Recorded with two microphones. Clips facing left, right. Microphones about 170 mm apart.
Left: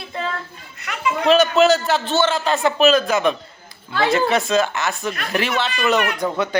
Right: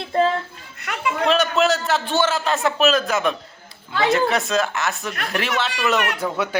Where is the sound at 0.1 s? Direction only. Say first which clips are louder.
Right 9 dB; 50° right (ahead or behind).